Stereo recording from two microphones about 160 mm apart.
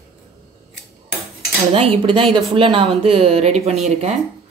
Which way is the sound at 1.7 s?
35° right (ahead or behind).